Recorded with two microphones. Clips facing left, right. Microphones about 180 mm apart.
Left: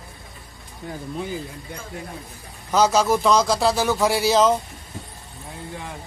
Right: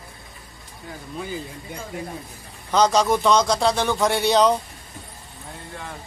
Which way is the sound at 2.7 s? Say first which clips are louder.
Even; 5° left (ahead or behind).